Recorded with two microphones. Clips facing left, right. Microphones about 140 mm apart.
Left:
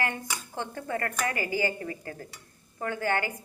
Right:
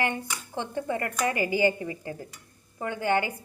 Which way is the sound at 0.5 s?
20° right (ahead or behind).